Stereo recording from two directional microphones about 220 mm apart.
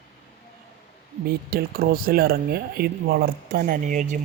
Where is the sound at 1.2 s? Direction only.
45° right (ahead or behind).